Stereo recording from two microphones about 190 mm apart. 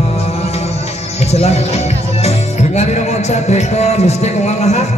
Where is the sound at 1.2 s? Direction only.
35° left (ahead or behind).